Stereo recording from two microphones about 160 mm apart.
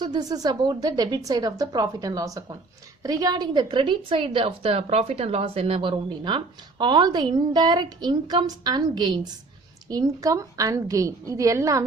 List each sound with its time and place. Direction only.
0.0 s a woman's voice: 25° right (ahead or behind)